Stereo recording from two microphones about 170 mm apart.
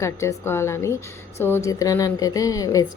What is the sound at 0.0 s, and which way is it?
A woman's voice, 15° left (ahead or behind).